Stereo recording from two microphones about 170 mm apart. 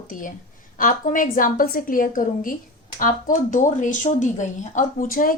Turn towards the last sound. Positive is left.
turn(degrees=55)  # may be behind; listen again after turning